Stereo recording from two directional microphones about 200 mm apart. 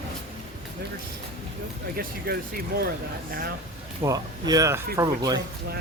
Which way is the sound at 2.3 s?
50° right (ahead or behind).